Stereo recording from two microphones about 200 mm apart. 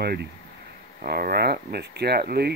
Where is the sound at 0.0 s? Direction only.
55° right (ahead or behind).